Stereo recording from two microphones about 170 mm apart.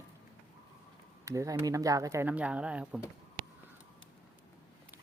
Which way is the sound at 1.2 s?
20° right (ahead or behind).